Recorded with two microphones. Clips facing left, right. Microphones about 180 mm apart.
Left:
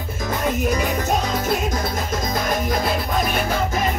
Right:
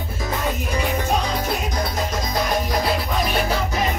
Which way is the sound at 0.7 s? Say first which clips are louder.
Left 1 dB; 45° left (ahead or behind).